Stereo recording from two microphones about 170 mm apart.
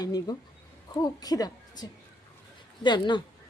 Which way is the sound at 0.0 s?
20° left (ahead or behind).